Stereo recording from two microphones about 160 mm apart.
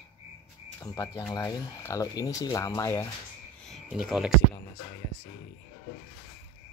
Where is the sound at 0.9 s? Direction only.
20° left (ahead or behind).